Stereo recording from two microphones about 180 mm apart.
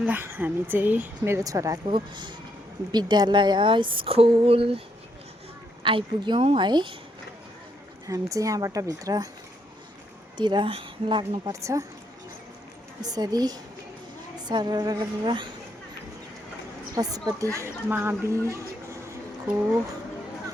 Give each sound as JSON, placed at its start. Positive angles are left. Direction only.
{"t": 0.0, "sound": "a woman's voice", "side_deg": -10}
{"t": 5.8, "sound": "speech", "side_deg": -25}
{"t": 8.0, "sound": "speech", "side_deg": -20}
{"t": 10.3, "sound": "speech", "side_deg": -25}
{"t": 11.6, "sound": "a woman's voice", "side_deg": -20}
{"t": 13.0, "sound": "speech", "side_deg": -20}
{"t": 16.9, "sound": "a woman's voice", "side_deg": -20}